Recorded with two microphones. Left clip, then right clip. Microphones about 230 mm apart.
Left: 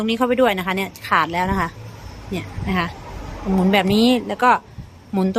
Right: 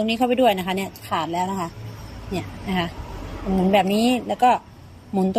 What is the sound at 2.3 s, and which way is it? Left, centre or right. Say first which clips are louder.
Speech: left 2 dB; centre.